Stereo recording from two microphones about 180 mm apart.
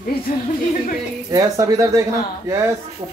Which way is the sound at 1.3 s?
20° right (ahead or behind).